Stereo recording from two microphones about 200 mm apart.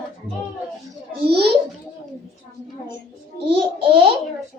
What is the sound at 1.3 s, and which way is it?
Speech, 55° right (ahead or behind).